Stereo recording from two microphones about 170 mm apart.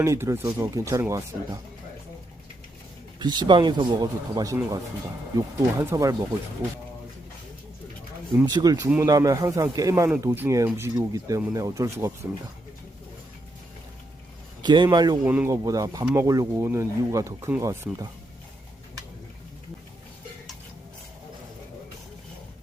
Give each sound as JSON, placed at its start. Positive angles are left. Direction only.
{"t": 0.0, "sound": "speech", "side_deg": -15}
{"t": 3.2, "sound": "speech", "side_deg": -25}
{"t": 8.4, "sound": "speech", "side_deg": -25}
{"t": 14.6, "sound": "speech", "side_deg": -25}
{"t": 15.2, "sound": "speech", "side_deg": -10}
{"t": 15.5, "sound": "speech", "side_deg": -20}